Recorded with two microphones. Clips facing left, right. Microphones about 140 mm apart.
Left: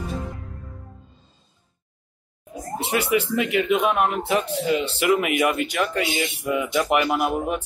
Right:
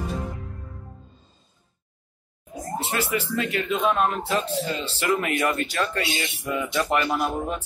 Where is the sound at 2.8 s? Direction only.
20° left (ahead or behind).